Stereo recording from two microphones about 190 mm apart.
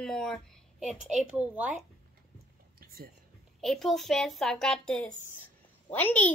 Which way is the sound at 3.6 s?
Centre (ahead or behind).